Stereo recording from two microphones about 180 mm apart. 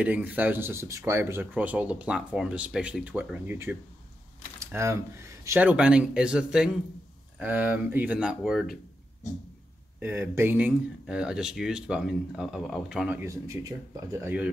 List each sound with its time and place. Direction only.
0.0 s speech: 10° right (ahead or behind)
9.9 s speech: 10° right (ahead or behind)
13.2 s speech: 15° right (ahead or behind)